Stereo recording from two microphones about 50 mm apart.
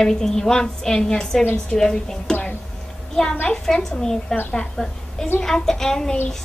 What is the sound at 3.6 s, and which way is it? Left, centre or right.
A woman's voice, centre.